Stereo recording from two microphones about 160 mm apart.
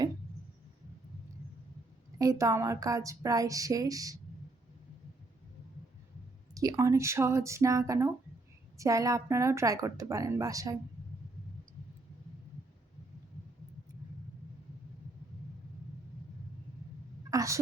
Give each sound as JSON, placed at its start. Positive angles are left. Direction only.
{"t": 2.1, "sound": "a woman's voice", "side_deg": -20}
{"t": 6.5, "sound": "a woman's voice", "side_deg": -20}
{"t": 17.3, "sound": "a sound", "side_deg": -20}